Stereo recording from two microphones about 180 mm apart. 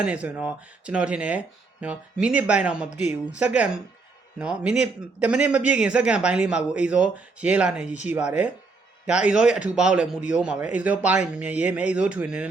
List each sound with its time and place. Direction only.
0.0 s a man's voice: 5° right (ahead or behind)